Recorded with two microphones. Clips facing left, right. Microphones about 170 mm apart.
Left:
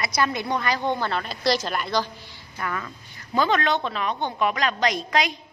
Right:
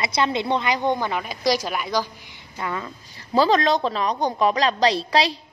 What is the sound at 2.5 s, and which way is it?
Speech, 20° right (ahead or behind).